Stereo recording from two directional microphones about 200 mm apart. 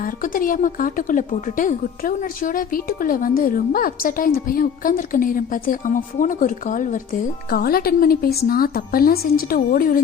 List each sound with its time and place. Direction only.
0.0 s speech: 45° left (ahead or behind)